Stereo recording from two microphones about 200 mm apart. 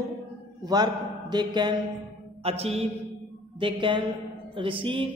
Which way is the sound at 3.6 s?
25° right (ahead or behind).